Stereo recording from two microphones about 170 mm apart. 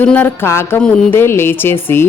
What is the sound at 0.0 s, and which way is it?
Speech, 10° left (ahead or behind).